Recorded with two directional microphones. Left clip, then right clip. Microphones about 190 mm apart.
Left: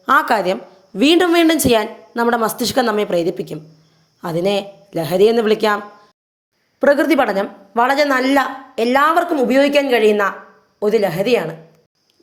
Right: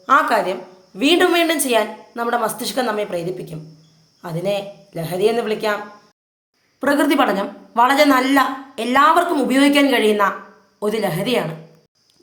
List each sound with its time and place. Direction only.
0.0 s a woman's voice: 40° left (ahead or behind)
6.7 s a woman's voice: 25° left (ahead or behind)